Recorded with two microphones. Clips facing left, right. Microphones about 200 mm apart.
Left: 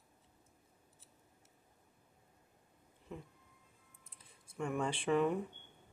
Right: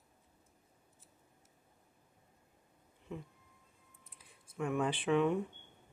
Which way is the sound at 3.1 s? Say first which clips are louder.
Right 3 dB; centre (ahead or behind).